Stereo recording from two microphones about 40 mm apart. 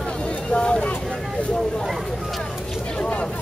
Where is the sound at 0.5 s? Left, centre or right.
Left.